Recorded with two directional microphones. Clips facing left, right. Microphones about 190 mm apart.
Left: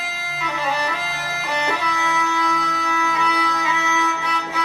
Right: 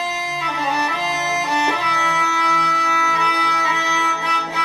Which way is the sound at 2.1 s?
30° right (ahead or behind).